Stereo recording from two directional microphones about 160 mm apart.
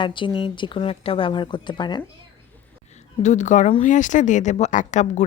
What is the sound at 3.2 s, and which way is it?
Speech, 50° left (ahead or behind).